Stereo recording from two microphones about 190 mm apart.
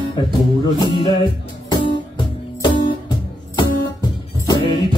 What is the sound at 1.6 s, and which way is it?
Music, 20° left (ahead or behind).